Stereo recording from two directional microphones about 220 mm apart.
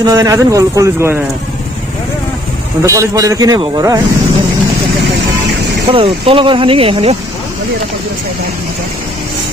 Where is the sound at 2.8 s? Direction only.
15° right (ahead or behind).